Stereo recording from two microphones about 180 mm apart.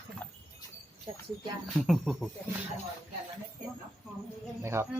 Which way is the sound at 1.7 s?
Centre (ahead or behind).